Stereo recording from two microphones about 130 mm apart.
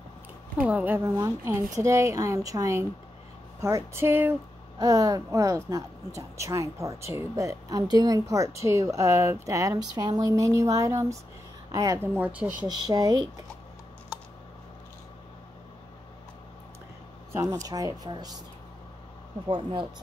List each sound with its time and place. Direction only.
0.6 s speech: 15° right (ahead or behind)
12.1 s speech: 10° right (ahead or behind)
12.6 s speech: 35° right (ahead or behind)
17.3 s speech: 25° right (ahead or behind)
19.4 s speech: 35° right (ahead or behind)